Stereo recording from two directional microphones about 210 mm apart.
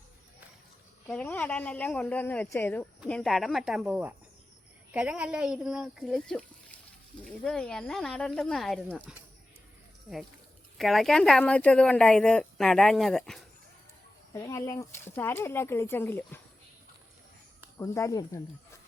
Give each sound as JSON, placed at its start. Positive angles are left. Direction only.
{"t": 1.0, "sound": "speech", "side_deg": 5}
{"t": 10.8, "sound": "speech", "side_deg": 0}
{"t": 14.3, "sound": "speech", "side_deg": 15}
{"t": 17.7, "sound": "speech", "side_deg": 15}